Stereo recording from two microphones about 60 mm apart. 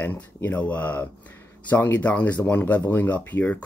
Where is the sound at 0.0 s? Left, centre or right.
Left.